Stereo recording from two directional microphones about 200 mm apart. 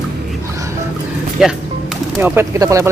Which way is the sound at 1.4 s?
5° right (ahead or behind).